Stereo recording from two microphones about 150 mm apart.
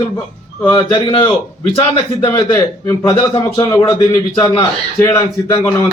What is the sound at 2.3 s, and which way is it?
Speech, 20° left (ahead or behind).